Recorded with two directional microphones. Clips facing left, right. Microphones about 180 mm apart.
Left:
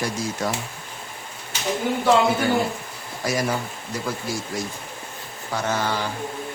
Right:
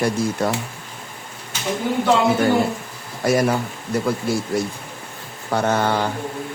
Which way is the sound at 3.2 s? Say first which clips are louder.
Right 6 dB; 60° right (ahead or behind).